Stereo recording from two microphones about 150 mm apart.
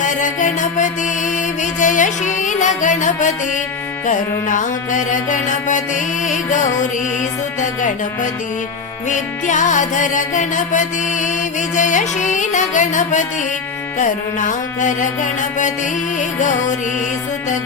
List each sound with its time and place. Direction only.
0.0 s music: 55° left (ahead or behind)
7.6 s music: 55° left (ahead or behind)